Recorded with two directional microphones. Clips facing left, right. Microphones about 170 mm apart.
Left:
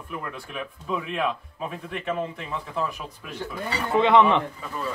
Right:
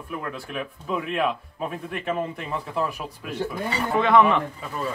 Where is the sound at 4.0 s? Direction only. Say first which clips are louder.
Left 1 dB; 20° left (ahead or behind).